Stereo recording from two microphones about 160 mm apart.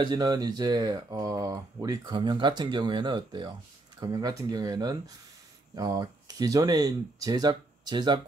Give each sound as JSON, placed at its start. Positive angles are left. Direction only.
{"t": 0.0, "sound": "speech", "side_deg": -30}